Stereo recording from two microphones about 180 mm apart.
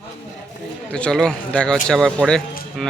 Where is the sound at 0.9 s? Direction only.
5° left (ahead or behind).